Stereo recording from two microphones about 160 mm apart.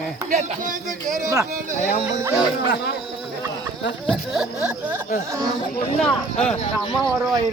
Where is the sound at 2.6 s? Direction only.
90° left.